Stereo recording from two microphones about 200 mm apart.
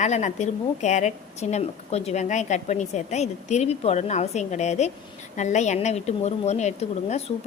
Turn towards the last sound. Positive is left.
turn(degrees=35)  # may be behind; listen again after turning